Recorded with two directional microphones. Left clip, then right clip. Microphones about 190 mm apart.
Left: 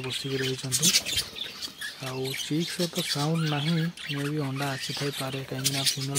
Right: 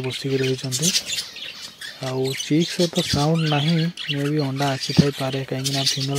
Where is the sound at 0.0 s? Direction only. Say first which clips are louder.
Right 6 dB; 25° right (ahead or behind).